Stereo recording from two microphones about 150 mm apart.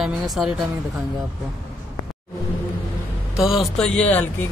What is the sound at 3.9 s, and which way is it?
Speech, 10° left (ahead or behind).